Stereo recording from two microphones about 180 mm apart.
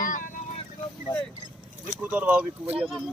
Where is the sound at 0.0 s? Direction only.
45° left (ahead or behind).